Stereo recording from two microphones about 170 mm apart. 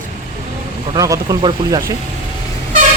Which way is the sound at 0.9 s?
20° right (ahead or behind).